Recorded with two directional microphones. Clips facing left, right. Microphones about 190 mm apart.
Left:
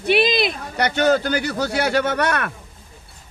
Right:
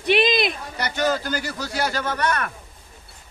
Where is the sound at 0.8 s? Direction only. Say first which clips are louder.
Left 6 dB; 65° left (ahead or behind).